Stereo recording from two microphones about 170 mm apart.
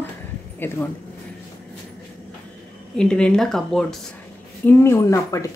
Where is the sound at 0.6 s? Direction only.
10° left (ahead or behind).